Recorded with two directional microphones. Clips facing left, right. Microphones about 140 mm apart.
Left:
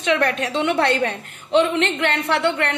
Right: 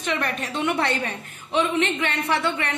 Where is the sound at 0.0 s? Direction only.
70° left (ahead or behind).